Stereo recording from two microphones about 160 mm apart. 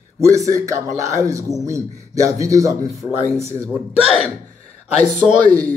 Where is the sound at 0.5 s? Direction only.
20° right (ahead or behind).